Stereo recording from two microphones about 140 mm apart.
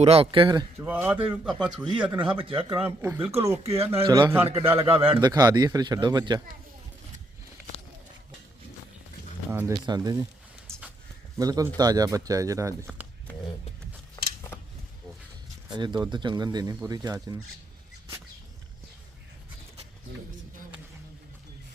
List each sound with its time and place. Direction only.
0.0 s speech: 45° right (ahead or behind)
0.8 s speech: 15° right (ahead or behind)
2.2 s speech: 40° right (ahead or behind)
3.0 s speech: 20° right (ahead or behind)
3.6 s speech: 45° right (ahead or behind)
5.2 s speech: 25° right (ahead or behind)
9.5 s speech: 15° right (ahead or behind)
9.8 s speech: 30° right (ahead or behind)
11.3 s speech: 25° right (ahead or behind)
14.2 s a sound: 30° left (ahead or behind)
15.7 s speech: 30° right (ahead or behind)